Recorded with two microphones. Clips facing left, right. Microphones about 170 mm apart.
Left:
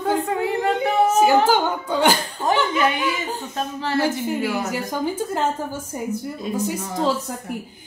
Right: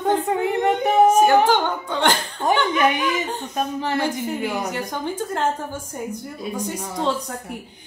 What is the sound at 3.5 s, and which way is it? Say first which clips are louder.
Speech: right 2 dB; 15° right (ahead or behind).